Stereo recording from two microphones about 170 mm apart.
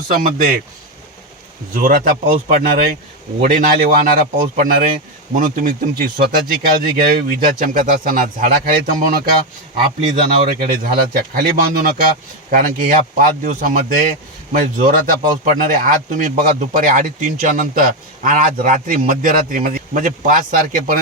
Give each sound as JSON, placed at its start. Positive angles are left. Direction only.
{"t": 0.1, "sound": "speech", "side_deg": -55}
{"t": 1.7, "sound": "speech", "side_deg": -50}
{"t": 7.3, "sound": "speech", "side_deg": -55}